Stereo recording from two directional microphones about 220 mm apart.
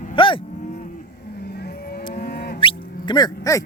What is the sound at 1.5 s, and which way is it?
Vehicle, 45° left (ahead or behind).